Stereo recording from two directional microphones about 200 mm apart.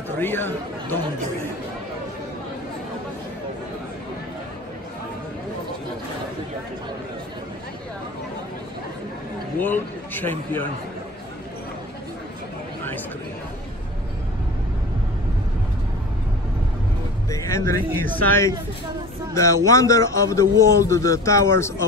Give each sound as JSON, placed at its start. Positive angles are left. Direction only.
{"t": 0.2, "sound": "a man's voice", "side_deg": 10}
{"t": 9.6, "sound": "a man's voice", "side_deg": 10}
{"t": 17.3, "sound": "a man's voice", "side_deg": 15}